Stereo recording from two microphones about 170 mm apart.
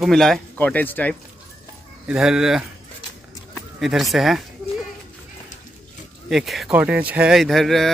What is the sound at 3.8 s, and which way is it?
Speech, centre (ahead or behind).